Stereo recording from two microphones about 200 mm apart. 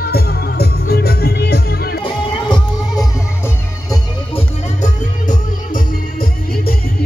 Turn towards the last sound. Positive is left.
turn(degrees=45)  # may be behind; listen again after turning